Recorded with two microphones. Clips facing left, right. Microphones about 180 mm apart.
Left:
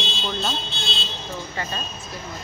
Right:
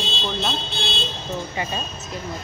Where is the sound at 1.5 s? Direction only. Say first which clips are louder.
Right 3 dB; 15° right (ahead or behind).